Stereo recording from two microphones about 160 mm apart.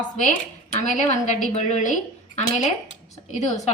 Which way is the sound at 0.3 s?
50° left (ahead or behind).